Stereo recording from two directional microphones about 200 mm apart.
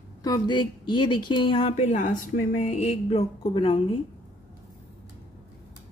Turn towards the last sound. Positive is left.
turn(degrees=25)  # may be behind; listen again after turning